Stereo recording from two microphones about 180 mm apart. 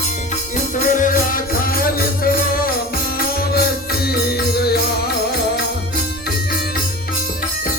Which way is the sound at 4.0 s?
60° left (ahead or behind).